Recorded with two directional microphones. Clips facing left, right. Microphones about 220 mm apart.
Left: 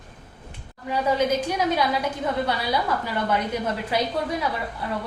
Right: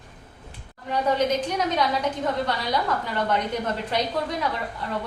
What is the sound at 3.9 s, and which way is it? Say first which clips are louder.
Speech: left 2 dB; 5° left (ahead or behind).